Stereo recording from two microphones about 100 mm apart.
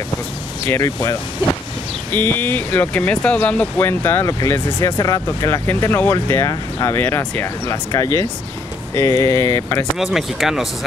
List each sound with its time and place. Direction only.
0.7 s speech: 30° left (ahead or behind)
2.0 s speech: 20° left (ahead or behind)
10.1 s speech: centre (ahead or behind)